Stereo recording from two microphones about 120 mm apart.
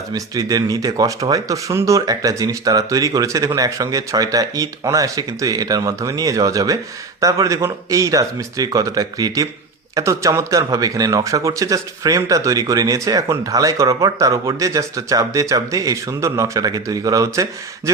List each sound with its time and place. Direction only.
0.1 s speech: 30° right (ahead or behind)